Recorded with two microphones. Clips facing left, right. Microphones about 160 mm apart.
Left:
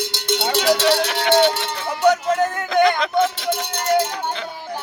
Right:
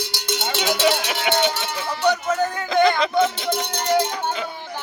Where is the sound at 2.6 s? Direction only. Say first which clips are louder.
Right 1 dB; centre (ahead or behind).